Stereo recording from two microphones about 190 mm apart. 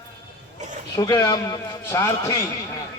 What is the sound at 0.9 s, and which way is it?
A man's voice, 20° left (ahead or behind).